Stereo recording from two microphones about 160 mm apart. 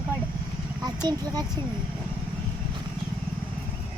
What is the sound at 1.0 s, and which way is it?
Speech, 25° right (ahead or behind).